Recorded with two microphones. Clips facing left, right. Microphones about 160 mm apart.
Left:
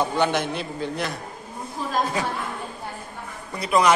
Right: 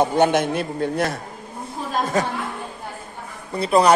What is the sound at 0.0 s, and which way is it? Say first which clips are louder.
A man's voice: right 5 dB; 50° right (ahead or behind).